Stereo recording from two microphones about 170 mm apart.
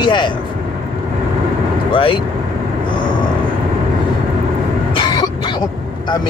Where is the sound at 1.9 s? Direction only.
30° left (ahead or behind).